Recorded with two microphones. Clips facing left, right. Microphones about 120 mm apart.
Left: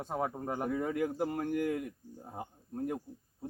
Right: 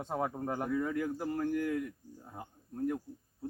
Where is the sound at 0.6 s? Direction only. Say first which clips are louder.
Left 1 dB; 20° left (ahead or behind).